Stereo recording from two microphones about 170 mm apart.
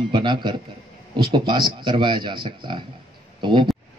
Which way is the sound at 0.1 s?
25° right (ahead or behind).